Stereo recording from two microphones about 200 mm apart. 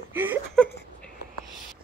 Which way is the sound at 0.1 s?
10° right (ahead or behind).